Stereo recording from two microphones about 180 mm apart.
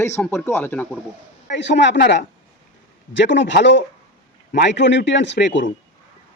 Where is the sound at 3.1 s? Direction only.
80° left.